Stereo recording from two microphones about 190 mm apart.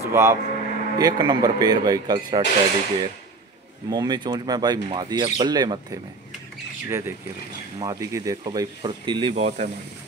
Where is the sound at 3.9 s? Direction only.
20° right (ahead or behind).